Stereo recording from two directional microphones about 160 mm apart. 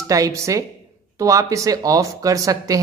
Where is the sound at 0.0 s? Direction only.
20° right (ahead or behind).